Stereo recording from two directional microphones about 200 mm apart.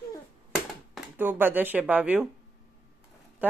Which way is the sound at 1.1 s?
10° right (ahead or behind).